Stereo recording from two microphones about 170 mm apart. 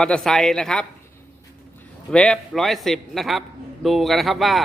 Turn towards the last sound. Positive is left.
turn(degrees=0)  # may be behind; listen again after turning